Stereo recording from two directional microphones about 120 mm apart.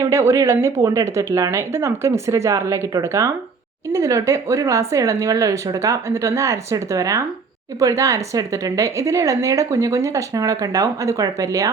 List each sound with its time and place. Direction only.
0.0 s speech: 25° right (ahead or behind)